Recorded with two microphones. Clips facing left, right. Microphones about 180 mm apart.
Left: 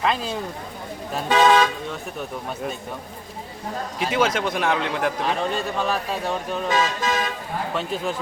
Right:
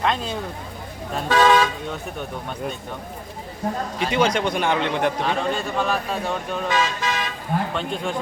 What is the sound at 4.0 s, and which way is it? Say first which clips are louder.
A man's voice: right 1 dB; 5° left (ahead or behind).